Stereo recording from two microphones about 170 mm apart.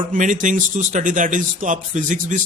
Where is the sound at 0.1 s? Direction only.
50° right (ahead or behind).